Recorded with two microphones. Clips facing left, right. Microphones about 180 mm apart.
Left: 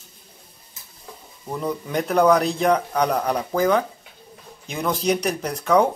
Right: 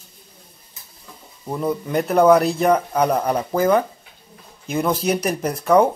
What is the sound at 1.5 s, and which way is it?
A man's voice, 5° right (ahead or behind).